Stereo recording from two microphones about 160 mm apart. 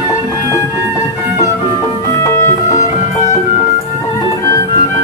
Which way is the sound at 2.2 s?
20° left (ahead or behind).